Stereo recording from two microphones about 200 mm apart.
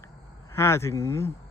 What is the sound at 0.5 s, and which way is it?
Speech, 15° left (ahead or behind).